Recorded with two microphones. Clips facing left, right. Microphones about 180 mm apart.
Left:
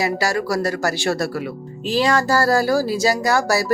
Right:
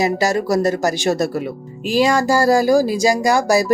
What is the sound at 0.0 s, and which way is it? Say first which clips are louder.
Speech: right 3 dB; 20° right (ahead or behind).